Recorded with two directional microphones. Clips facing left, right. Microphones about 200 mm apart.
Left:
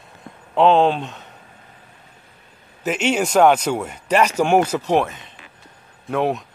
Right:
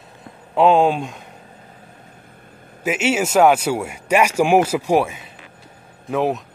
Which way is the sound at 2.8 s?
5° right (ahead or behind).